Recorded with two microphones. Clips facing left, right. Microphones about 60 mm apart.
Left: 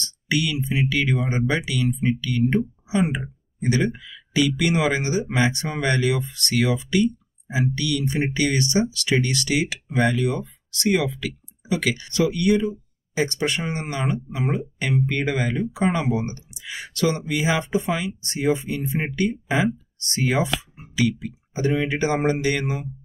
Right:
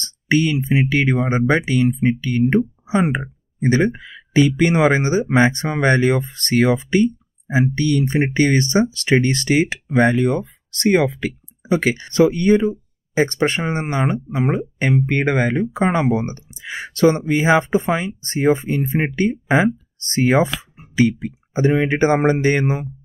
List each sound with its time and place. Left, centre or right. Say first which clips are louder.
0.0 s speech: right 6 dB; right